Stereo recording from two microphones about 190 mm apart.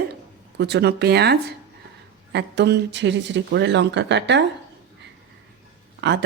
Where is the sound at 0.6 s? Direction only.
60° right (ahead or behind).